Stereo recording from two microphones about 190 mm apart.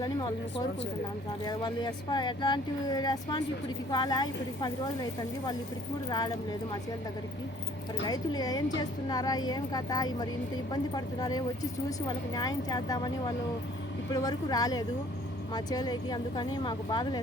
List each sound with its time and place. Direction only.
0.0 s speech: 20° left (ahead or behind)
6.1 s speech: 20° left (ahead or behind)
8.0 s speech: 20° left (ahead or behind)